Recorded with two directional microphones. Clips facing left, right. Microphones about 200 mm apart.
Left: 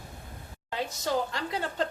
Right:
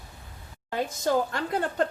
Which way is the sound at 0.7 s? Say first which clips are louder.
Right 4 dB; 50° right (ahead or behind).